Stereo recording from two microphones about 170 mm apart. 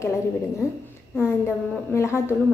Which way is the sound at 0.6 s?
15° left (ahead or behind).